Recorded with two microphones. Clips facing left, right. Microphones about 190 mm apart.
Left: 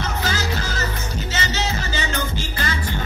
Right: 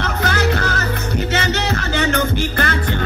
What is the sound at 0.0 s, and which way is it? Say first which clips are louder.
Music: right 6 dB; 60° right (ahead or behind).